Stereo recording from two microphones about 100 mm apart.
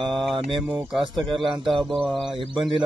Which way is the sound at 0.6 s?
Centre (ahead or behind).